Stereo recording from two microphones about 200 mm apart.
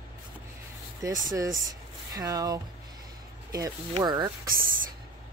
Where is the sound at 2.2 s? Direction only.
20° right (ahead or behind).